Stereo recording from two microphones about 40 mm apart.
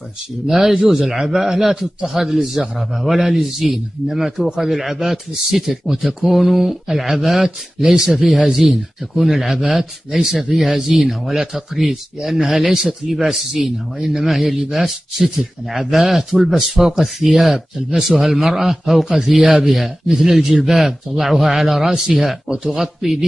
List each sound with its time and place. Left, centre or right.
0.5 s a man's voice: centre
9.2 s a man's voice: centre
19.0 s a man's voice: centre